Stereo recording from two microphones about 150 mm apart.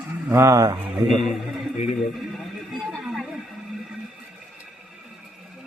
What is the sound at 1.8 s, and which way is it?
Speech, 50° left (ahead or behind).